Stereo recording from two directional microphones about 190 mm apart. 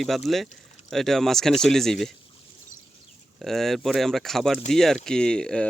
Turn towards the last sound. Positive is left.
turn(degrees=5)  # may be behind; listen again after turning